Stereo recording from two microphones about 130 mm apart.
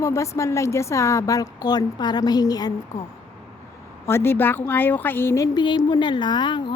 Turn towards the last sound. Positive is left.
turn(degrees=35)  # may be behind; listen again after turning